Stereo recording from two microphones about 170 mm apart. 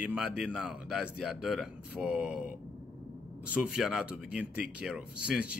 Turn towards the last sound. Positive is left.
turn(degrees=-5)  # may be behind; listen again after turning